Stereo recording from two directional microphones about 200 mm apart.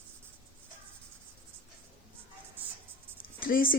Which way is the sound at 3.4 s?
45° left (ahead or behind).